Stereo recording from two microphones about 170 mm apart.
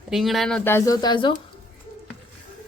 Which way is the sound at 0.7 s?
15° left (ahead or behind).